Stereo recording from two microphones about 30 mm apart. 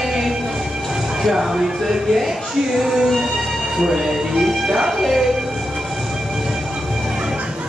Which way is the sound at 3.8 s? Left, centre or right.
Centre.